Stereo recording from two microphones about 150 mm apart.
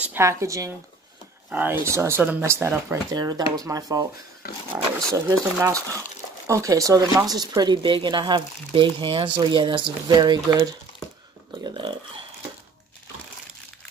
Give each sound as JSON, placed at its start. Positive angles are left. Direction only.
{"t": 0.0, "sound": "speech", "side_deg": -15}